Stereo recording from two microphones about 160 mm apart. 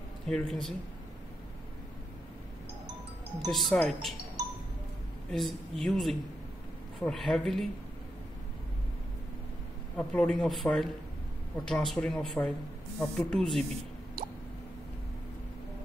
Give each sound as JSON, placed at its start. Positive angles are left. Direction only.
{"t": 0.3, "sound": "speech", "side_deg": 5}
{"t": 3.4, "sound": "speech", "side_deg": 0}
{"t": 5.3, "sound": "speech", "side_deg": 5}
{"t": 9.9, "sound": "speech", "side_deg": 5}